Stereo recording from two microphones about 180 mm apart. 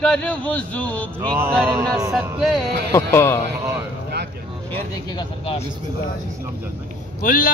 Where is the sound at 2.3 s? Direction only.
Centre (ahead or behind).